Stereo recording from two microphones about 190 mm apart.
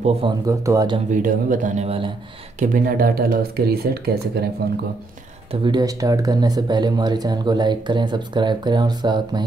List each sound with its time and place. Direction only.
0.0 s speech: 30° right (ahead or behind)
0.5 s speech: 15° right (ahead or behind)
1.1 s speech: 45° right (ahead or behind)
2.6 s speech: 45° right (ahead or behind)
5.5 s speech: 25° right (ahead or behind)